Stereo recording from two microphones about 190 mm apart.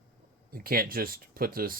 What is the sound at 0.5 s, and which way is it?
Speech, 50° right (ahead or behind).